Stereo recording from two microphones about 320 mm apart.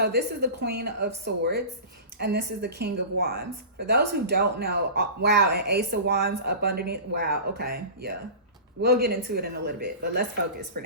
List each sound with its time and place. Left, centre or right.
0.0 s a woman's voice: right